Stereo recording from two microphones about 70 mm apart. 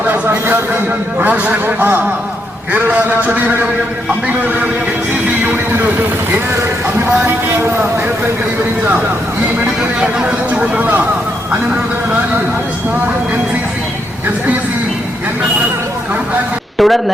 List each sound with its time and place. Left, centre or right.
0.0 s speech: right
7.0 s speech: right
10.0 s speech: centre
16.7 s a sound: centre